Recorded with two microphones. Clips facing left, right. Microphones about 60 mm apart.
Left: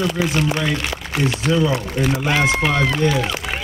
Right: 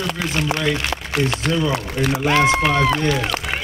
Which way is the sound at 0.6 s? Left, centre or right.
Centre.